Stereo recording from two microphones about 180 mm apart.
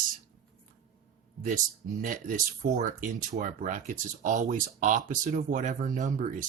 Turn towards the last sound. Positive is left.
turn(degrees=-45)  # may be behind; listen again after turning